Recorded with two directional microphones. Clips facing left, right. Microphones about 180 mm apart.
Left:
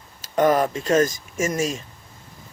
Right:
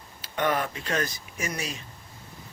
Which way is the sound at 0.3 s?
40° left (ahead or behind).